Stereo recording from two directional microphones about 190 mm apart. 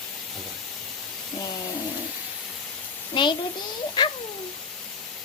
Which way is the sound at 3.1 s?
25° left (ahead or behind).